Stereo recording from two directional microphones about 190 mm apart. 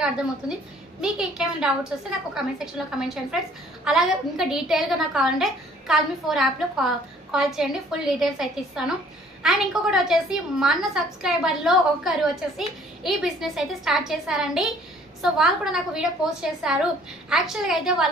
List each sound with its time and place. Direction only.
1.0 s a woman's voice: 5° right (ahead or behind)